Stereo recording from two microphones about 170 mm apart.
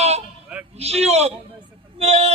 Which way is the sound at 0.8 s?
40° right (ahead or behind).